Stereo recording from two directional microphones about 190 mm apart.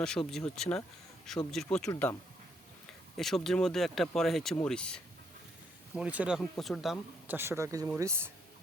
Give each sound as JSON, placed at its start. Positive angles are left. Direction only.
{"t": 0.0, "sound": "speech", "side_deg": 5}
{"t": 3.2, "sound": "speech", "side_deg": 0}
{"t": 6.0, "sound": "speech", "side_deg": -5}
{"t": 7.3, "sound": "speech", "side_deg": -15}